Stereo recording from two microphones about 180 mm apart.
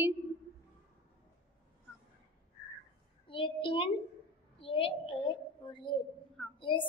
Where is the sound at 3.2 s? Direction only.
30° left (ahead or behind).